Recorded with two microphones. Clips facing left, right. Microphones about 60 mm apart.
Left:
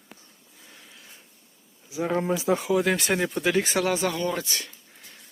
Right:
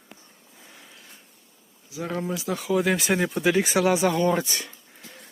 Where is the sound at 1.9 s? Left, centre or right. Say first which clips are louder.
Left 4 dB; left.